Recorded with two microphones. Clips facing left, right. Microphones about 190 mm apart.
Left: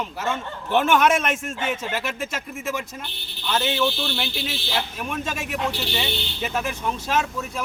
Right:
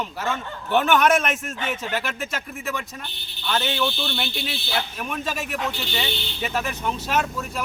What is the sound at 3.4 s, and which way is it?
Speech, 5° left (ahead or behind).